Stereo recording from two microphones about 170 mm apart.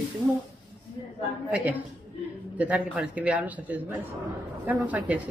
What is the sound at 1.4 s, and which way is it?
A man's voice, 10° right (ahead or behind).